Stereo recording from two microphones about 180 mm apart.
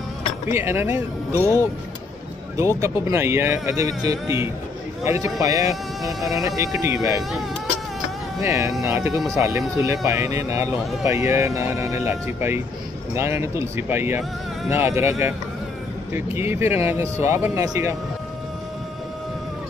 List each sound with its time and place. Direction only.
0.5 s speech: 15° right (ahead or behind)
1.4 s speech: 10° left (ahead or behind)
2.8 s speech: 15° right (ahead or behind)
8.4 s speech: 15° right (ahead or behind)